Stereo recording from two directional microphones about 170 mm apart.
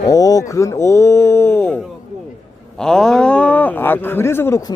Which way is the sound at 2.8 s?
5° left (ahead or behind).